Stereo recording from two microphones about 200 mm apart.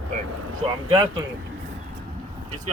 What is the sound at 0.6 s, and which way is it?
Speech, 25° right (ahead or behind).